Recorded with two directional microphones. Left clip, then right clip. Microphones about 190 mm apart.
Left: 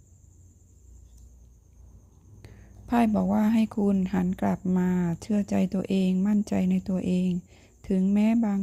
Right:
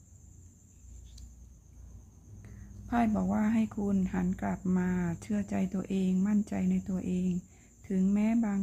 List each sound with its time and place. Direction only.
2.4 s speech: 35° left (ahead or behind)
7.8 s a sound: 30° left (ahead or behind)
8.1 s speech: 35° left (ahead or behind)